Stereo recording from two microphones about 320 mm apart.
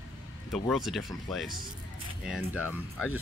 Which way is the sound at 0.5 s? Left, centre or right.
Centre.